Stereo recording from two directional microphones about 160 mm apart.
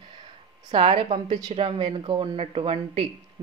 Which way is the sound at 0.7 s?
35° right (ahead or behind).